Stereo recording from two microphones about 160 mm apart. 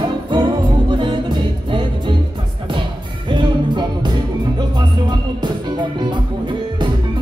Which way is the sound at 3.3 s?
30° right (ahead or behind).